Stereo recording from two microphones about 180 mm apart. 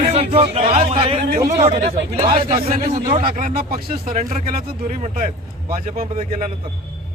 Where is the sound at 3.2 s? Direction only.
55° right (ahead or behind).